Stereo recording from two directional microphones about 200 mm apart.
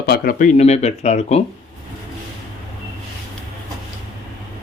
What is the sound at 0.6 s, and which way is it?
Speech, 35° left (ahead or behind).